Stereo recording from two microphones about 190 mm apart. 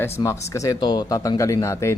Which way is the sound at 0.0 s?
15° left (ahead or behind).